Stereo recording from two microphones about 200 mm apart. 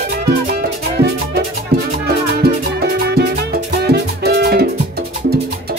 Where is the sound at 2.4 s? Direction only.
55° right (ahead or behind).